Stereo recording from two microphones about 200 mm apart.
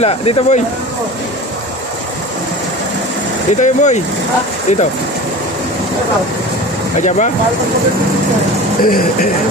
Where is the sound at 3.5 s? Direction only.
35° left (ahead or behind).